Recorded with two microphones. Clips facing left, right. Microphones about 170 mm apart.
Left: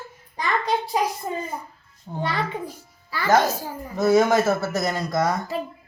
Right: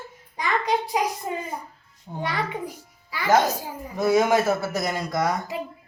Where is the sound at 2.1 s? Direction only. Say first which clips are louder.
Left 2 dB; centre (ahead or behind).